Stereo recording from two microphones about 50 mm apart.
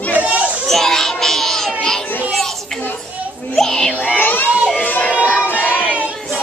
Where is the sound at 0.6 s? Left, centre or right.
Centre.